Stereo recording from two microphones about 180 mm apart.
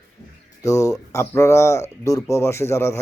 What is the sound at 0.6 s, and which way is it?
Speech, 20° left (ahead or behind).